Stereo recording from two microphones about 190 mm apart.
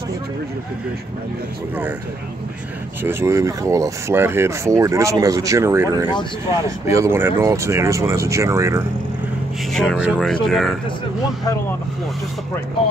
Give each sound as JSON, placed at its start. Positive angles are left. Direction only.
{"t": 3.0, "sound": "speech", "side_deg": -10}
{"t": 9.7, "sound": "speech", "side_deg": 0}